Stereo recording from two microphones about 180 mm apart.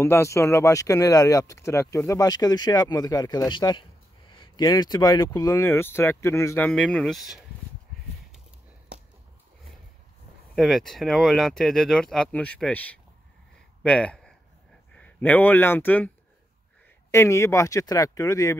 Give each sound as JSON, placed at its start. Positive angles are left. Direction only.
{"t": 0.0, "sound": "speech", "side_deg": 15}
{"t": 10.5, "sound": "speech", "side_deg": 0}
{"t": 17.1, "sound": "speech", "side_deg": 15}